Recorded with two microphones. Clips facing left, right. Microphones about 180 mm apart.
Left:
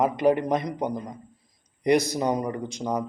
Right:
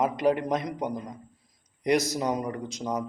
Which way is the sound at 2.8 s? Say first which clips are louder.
Left 3 dB; 30° left (ahead or behind).